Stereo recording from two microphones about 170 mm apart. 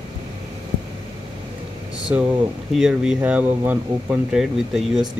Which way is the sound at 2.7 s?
5° right (ahead or behind).